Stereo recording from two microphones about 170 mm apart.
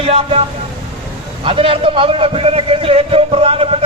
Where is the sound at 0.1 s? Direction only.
35° right (ahead or behind).